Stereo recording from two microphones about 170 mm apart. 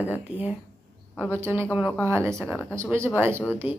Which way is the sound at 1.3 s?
15° right (ahead or behind).